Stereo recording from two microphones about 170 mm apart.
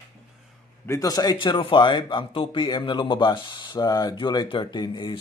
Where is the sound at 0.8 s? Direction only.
20° left (ahead or behind).